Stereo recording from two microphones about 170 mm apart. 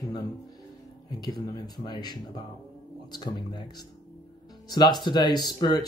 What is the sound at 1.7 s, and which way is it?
Speech, 25° left (ahead or behind).